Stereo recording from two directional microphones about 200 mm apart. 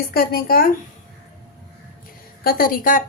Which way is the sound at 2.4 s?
45° left (ahead or behind).